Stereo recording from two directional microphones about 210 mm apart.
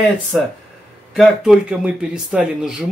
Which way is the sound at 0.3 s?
Centre (ahead or behind).